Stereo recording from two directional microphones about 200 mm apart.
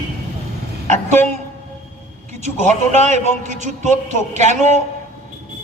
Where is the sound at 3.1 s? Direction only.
35° right (ahead or behind).